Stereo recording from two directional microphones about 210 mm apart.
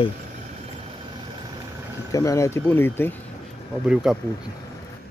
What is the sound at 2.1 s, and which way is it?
Speech, 15° left (ahead or behind).